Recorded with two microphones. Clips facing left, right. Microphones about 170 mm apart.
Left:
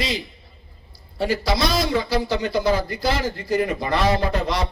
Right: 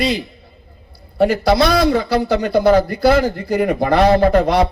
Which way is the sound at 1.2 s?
60° right (ahead or behind).